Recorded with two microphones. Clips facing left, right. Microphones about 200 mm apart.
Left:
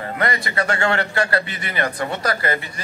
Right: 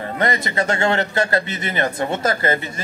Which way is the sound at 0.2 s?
20° right (ahead or behind).